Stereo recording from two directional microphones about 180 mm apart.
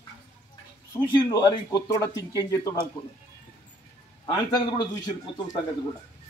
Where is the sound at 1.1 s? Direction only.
25° left (ahead or behind).